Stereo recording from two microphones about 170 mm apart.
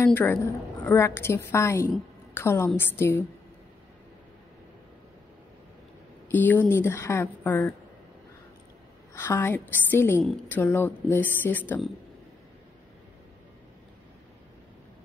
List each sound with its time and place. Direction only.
0.0 s a woman's voice: 10° left (ahead or behind)
6.2 s a woman's voice: 10° left (ahead or behind)
9.1 s a woman's voice: 15° left (ahead or behind)